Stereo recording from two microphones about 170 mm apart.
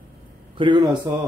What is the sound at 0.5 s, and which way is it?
Speech, 30° right (ahead or behind).